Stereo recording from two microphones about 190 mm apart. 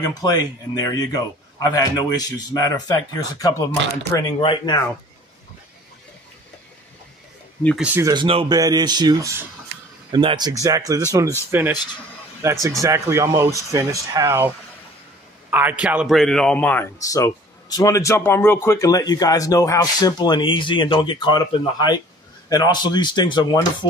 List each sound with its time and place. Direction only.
0.0 s a man's voice: 20° left (ahead or behind)
7.6 s speech: 5° right (ahead or behind)
8.0 s speech: 25° right (ahead or behind)
15.5 s a man's voice: 10° right (ahead or behind); by 23.9 s 25° left (ahead or behind)